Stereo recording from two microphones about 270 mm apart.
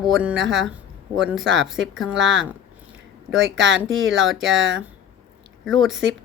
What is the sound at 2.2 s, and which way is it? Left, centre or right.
Speech, right.